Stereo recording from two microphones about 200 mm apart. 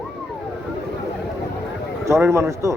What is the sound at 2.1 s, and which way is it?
Speech, 15° right (ahead or behind).